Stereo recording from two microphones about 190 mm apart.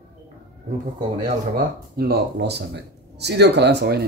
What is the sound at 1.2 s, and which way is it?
Speech, 50° right (ahead or behind).